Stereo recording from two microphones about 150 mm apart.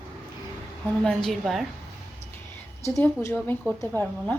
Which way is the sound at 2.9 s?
5° left (ahead or behind).